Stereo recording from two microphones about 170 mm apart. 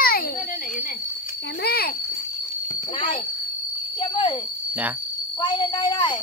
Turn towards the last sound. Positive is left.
turn(degrees=25)  # may be behind; listen again after turning